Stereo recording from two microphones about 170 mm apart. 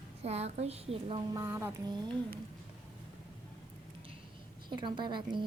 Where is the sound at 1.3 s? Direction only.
15° right (ahead or behind).